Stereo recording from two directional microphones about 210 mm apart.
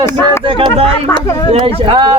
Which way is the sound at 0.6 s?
25° right (ahead or behind).